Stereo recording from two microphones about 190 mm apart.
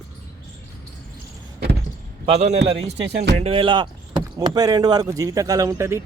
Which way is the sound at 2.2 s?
35° right (ahead or behind).